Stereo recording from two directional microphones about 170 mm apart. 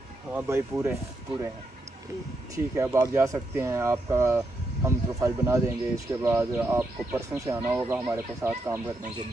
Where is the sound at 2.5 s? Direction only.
15° right (ahead or behind).